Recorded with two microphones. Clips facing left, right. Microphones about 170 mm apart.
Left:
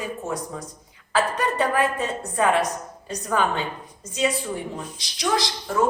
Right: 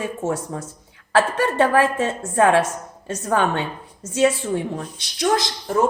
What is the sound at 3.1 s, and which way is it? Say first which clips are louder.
A woman's voice: right 3 dB; 70° right (ahead or behind).